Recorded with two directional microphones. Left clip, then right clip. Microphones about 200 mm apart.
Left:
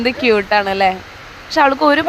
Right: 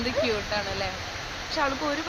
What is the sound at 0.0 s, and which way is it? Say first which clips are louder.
Speech: left 12 dB; 50° left (ahead or behind).